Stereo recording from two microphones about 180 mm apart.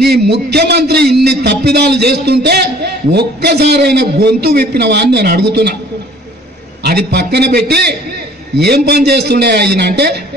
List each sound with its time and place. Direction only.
0.0 s a man's voice: 65° right (ahead or behind)
6.8 s a man's voice: 60° right (ahead or behind)